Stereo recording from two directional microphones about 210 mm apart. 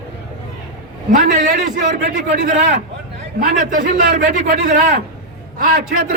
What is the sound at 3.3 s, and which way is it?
A man's voice, 40° right (ahead or behind).